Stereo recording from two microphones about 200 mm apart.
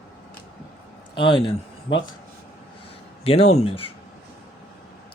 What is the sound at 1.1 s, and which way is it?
Speech, 25° left (ahead or behind).